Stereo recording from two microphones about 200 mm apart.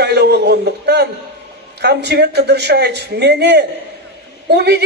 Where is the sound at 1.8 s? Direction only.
55° right (ahead or behind).